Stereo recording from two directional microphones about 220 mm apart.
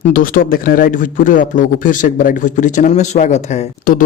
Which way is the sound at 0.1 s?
40° left (ahead or behind).